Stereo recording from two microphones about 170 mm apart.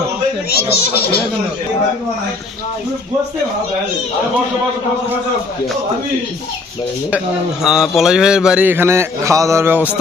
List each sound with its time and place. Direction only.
0.5 s speech: 65° left (ahead or behind)
7.6 s speech: 5° right (ahead or behind)